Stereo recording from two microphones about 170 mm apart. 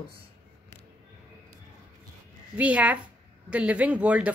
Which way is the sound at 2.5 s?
10° right (ahead or behind).